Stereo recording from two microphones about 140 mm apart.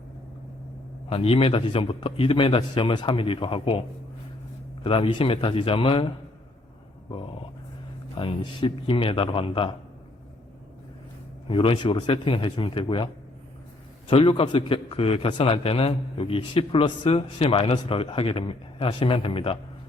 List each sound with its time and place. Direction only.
1.1 s a man's voice: 40° left (ahead or behind)
4.8 s a man's voice: 40° left (ahead or behind)
8.1 s a man's voice: 40° left (ahead or behind)
11.4 s a man's voice: 40° left (ahead or behind)
14.1 s a man's voice: 40° left (ahead or behind)